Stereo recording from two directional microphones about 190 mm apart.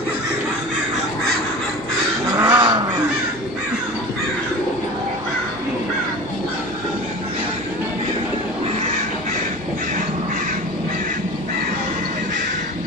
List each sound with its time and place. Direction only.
2.5 s goose: 25° right (ahead or behind)